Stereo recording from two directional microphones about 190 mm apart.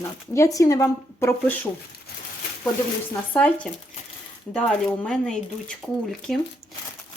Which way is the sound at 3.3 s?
5° left (ahead or behind).